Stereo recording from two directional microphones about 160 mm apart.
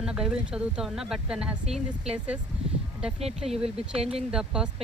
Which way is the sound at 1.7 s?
40° right (ahead or behind).